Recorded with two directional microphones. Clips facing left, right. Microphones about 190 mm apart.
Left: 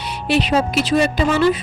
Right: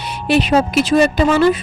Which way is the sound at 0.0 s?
50° right (ahead or behind).